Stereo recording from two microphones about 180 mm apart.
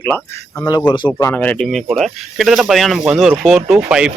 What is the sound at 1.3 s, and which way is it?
Speech, 10° left (ahead or behind).